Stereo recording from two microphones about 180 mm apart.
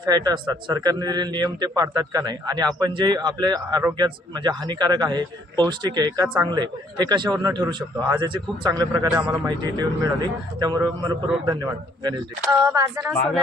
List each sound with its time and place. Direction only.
0.0 s a man's voice: 25° right (ahead or behind)
9.0 s a man's voice: 10° right (ahead or behind)
9.4 s a man's voice: 20° right (ahead or behind)